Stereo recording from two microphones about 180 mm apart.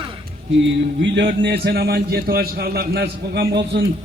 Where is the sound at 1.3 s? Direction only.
60° right (ahead or behind).